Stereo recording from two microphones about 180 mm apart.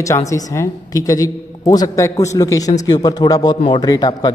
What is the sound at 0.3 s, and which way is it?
A woman's voice, 20° left (ahead or behind).